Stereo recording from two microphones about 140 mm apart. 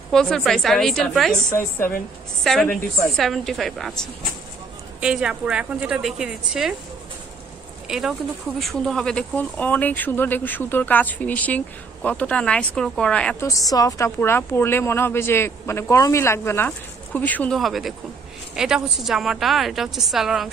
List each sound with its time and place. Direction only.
0.1 s a woman's voice: 5° left (ahead or behind)
1.5 s speech: 20° left (ahead or behind)
2.4 s a woman's voice: 5° left (ahead or behind)
8.5 s speech: 5° left (ahead or behind)
13.4 s speech: 25° left (ahead or behind)
17.6 s a woman's voice: centre (ahead or behind)